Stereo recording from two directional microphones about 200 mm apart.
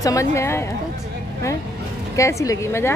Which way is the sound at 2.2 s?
15° left (ahead or behind).